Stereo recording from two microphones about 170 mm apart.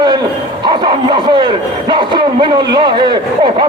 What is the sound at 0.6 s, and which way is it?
Speech, 25° right (ahead or behind).